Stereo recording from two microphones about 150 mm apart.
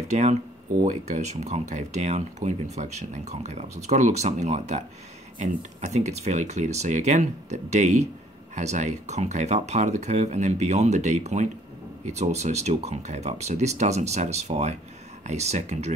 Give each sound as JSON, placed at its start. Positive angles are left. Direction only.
{"t": 0.1, "sound": "speech", "side_deg": -50}